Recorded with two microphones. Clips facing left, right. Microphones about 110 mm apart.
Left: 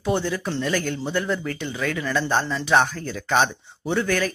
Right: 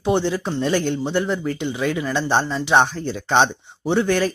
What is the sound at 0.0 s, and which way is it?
Speech, 25° right (ahead or behind).